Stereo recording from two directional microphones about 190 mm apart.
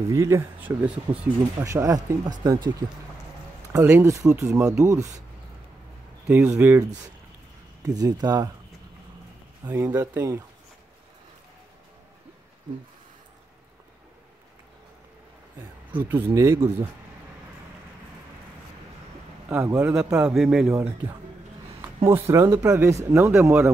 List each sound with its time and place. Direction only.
0.1 s speech: 15° right (ahead or behind)
3.7 s speech: 15° right (ahead or behind)
6.2 s speech: 10° right (ahead or behind)
9.7 s speech: 15° right (ahead or behind)
16.0 s speech: 10° right (ahead or behind)
19.5 s speech: 15° right (ahead or behind)
20.2 s speech: 5° right (ahead or behind)
22.0 s speech: 15° right (ahead or behind)